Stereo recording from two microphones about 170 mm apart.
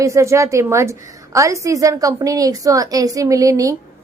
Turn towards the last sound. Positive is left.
turn(degrees=-20)  # may be behind; listen again after turning